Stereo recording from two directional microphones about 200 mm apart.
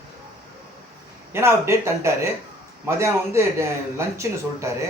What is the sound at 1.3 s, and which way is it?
A man's voice, 10° right (ahead or behind).